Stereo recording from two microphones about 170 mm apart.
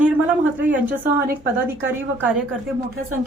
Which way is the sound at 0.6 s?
10° right (ahead or behind).